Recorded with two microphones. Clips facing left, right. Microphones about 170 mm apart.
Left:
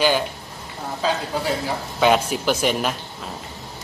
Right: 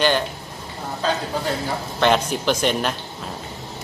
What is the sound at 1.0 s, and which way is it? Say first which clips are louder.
A man's voice: even; 10° left (ahead or behind).